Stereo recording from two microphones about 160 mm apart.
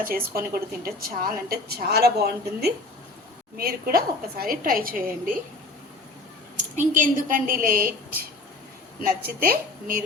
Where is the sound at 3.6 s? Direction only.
70° right (ahead or behind).